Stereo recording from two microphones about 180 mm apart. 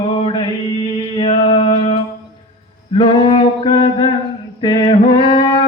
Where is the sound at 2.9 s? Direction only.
30° left (ahead or behind).